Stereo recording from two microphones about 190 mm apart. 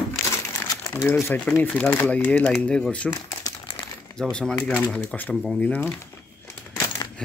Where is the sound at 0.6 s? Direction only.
15° left (ahead or behind).